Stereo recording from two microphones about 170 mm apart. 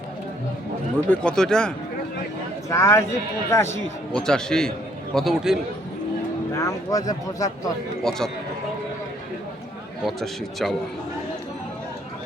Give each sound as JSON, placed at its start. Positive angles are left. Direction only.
{"t": 1.2, "sound": "a man's voice", "side_deg": 5}
{"t": 2.6, "sound": "speech", "side_deg": 15}
{"t": 4.1, "sound": "a man's voice", "side_deg": 5}
{"t": 6.5, "sound": "speech", "side_deg": 15}
{"t": 8.1, "sound": "a man's voice", "side_deg": 5}
{"t": 10.1, "sound": "a man's voice", "side_deg": 0}